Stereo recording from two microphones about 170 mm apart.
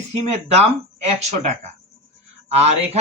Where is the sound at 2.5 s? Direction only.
40° right (ahead or behind).